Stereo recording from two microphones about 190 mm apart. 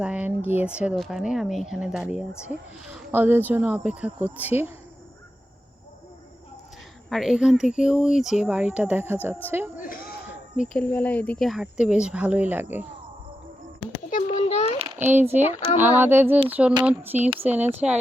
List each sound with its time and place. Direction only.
0.0 s speech: 5° right (ahead or behind)
7.1 s speech: centre (ahead or behind)
10.6 s speech: 5° left (ahead or behind)
14.1 s a sound: 40° left (ahead or behind)
14.9 s speech: 10° right (ahead or behind)